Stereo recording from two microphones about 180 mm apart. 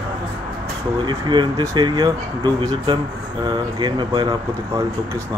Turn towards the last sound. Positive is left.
turn(degrees=-25)  # may be behind; listen again after turning